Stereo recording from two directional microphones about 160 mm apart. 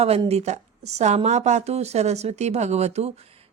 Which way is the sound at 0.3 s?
45° right (ahead or behind).